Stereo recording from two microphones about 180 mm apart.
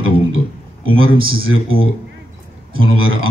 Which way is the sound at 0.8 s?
90° right.